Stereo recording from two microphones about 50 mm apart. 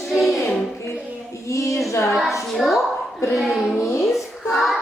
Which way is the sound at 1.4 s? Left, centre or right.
Left.